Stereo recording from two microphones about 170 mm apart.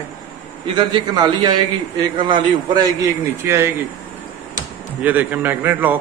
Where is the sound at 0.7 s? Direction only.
25° right (ahead or behind).